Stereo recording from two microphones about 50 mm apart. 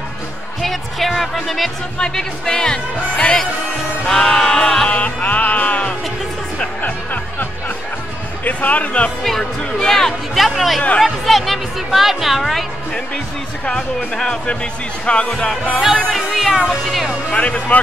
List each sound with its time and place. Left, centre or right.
0.6 s speech: centre
4.8 s music: left
8.5 s speech: left
9.2 s speech: centre
16.2 s speech: centre
17.3 s speech: left